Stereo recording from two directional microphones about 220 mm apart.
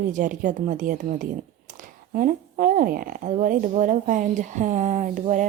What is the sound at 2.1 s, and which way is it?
Speech, 35° right (ahead or behind).